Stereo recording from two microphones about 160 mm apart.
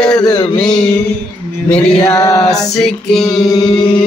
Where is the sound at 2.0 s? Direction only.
20° left (ahead or behind).